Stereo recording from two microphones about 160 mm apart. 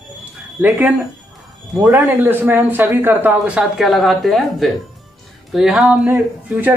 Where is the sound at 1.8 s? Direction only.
10° right (ahead or behind).